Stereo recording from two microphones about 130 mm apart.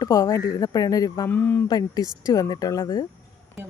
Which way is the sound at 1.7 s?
30° left (ahead or behind).